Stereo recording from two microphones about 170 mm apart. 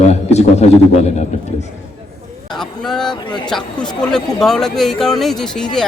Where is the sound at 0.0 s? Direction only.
40° left (ahead or behind).